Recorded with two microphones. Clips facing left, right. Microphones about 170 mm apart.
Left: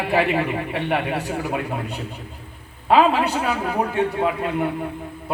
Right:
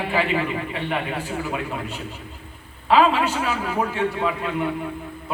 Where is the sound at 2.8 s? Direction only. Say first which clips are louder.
Left 1 dB; 40° left (ahead or behind).